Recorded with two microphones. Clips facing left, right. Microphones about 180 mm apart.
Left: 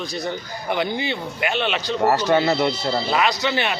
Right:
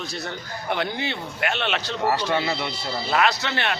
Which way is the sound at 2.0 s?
40° left (ahead or behind).